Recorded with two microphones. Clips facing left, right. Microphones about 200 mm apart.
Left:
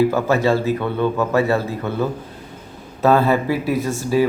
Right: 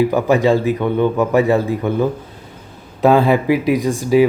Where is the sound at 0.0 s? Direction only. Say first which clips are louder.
Right 3 dB; 15° right (ahead or behind).